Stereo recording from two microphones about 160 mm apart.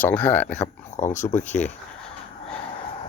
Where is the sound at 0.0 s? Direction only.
10° left (ahead or behind).